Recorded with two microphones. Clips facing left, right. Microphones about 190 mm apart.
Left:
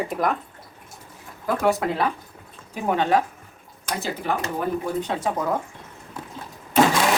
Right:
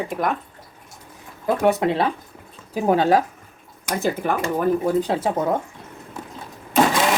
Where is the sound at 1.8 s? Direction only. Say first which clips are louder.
Right 4 dB; 25° right (ahead or behind).